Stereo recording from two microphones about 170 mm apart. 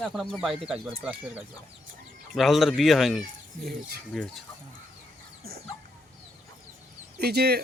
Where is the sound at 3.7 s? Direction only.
65° right (ahead or behind).